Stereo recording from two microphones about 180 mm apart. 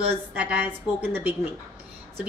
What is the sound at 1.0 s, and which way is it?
Speech, 10° right (ahead or behind).